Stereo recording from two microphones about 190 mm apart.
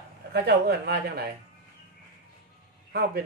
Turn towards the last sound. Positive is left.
turn(degrees=-55)  # may be behind; listen again after turning